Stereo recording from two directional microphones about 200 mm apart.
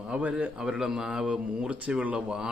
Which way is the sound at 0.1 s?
5° right (ahead or behind).